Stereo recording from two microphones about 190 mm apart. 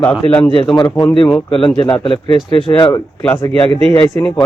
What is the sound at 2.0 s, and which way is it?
Speech, 25° left (ahead or behind).